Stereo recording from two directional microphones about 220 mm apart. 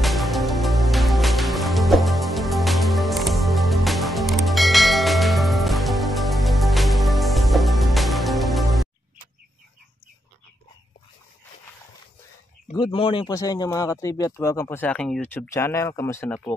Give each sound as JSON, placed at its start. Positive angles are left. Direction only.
{"t": 0.0, "sound": "music", "side_deg": 0}
{"t": 12.7, "sound": "speech", "side_deg": 25}